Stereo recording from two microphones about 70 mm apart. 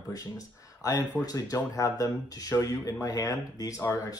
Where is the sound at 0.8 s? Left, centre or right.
Left.